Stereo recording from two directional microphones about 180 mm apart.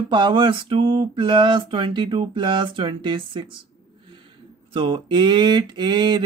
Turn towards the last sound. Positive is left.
turn(degrees=-25)  # may be behind; listen again after turning